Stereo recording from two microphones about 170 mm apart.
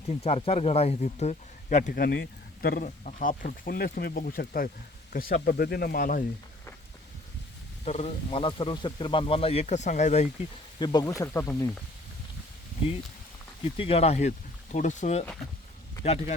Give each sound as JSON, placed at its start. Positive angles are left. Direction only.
{"t": 0.1, "sound": "speech", "side_deg": 35}
{"t": 1.9, "sound": "speech", "side_deg": 65}
{"t": 7.9, "sound": "speech", "side_deg": 40}
{"t": 10.8, "sound": "speech", "side_deg": 25}
{"t": 13.7, "sound": "speech", "side_deg": 35}